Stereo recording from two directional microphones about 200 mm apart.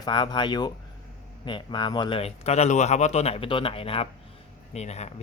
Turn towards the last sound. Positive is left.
turn(degrees=35)  # may be behind; listen again after turning